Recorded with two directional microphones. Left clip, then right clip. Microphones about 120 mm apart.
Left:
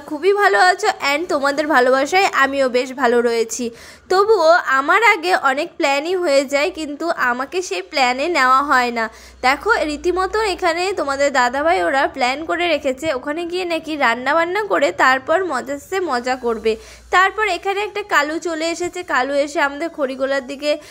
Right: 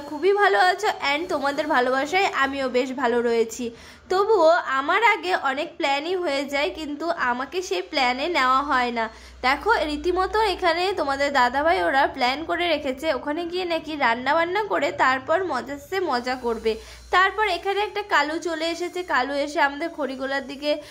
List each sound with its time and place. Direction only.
0.2 s a woman's voice: 35° left (ahead or behind)